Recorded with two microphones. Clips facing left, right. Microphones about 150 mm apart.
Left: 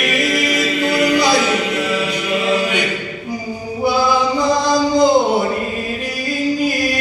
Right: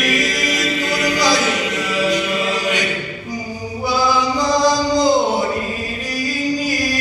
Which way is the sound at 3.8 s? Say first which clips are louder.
Left 2 dB; 55° left (ahead or behind).